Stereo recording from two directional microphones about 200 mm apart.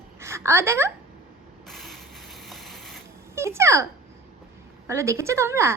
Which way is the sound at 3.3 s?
15° right (ahead or behind).